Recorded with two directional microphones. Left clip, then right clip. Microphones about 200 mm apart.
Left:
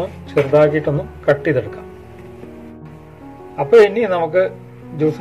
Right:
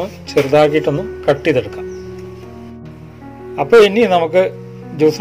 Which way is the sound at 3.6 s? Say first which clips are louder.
Right 2 dB; 50° right (ahead or behind).